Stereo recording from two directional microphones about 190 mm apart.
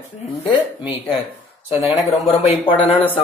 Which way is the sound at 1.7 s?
35° left (ahead or behind).